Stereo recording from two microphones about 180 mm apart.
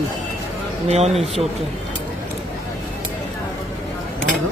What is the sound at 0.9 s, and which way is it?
Speech, 35° right (ahead or behind).